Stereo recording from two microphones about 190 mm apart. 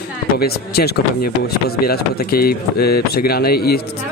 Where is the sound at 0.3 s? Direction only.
55° left (ahead or behind).